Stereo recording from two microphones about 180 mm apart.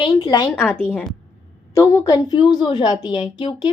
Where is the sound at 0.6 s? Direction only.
5° left (ahead or behind); by 3.7 s 25° left (ahead or behind).